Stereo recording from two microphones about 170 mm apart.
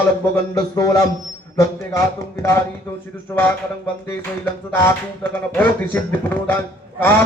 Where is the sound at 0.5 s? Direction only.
20° left (ahead or behind).